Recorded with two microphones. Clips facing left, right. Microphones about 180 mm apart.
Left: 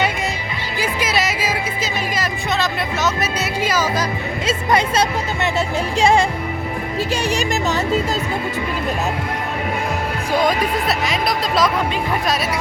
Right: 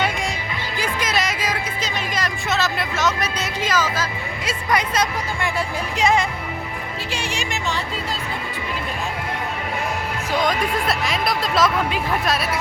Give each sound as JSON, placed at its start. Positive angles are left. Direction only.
{"t": 0.8, "sound": "music", "side_deg": 5}
{"t": 4.4, "sound": "speech", "side_deg": 25}
{"t": 7.1, "sound": "speech", "side_deg": 40}
{"t": 10.4, "sound": "speech", "side_deg": 0}